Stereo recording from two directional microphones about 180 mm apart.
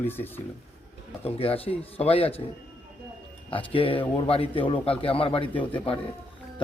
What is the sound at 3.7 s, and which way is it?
A man's voice, 30° left (ahead or behind).